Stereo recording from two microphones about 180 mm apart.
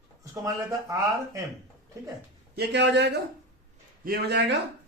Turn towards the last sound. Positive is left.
turn(degrees=-70)  # may be behind; listen again after turning